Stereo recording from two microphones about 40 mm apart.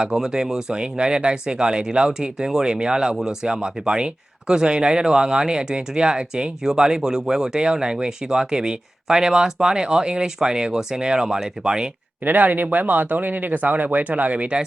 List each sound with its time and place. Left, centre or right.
0.0 s speech: centre
12.2 s speech: right